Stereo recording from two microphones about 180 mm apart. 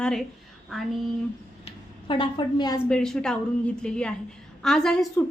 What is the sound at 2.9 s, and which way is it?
A woman's voice, 5° left (ahead or behind).